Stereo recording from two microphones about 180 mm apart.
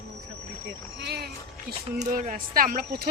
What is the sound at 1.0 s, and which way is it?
Speech, 65° right (ahead or behind).